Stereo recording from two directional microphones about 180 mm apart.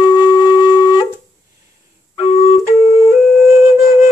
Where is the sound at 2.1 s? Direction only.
35° left (ahead or behind).